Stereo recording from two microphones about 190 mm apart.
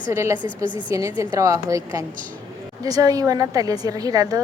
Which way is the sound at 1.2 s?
15° right (ahead or behind).